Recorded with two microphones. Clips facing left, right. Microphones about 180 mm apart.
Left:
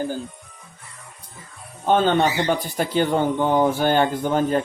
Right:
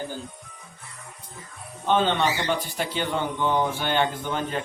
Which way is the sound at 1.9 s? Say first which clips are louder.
Left 4 dB; 45° left (ahead or behind).